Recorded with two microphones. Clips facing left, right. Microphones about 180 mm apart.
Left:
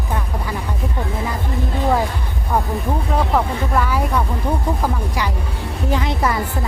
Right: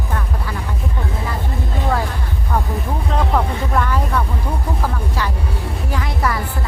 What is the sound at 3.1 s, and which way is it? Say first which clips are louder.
Music: even; 5° left (ahead or behind).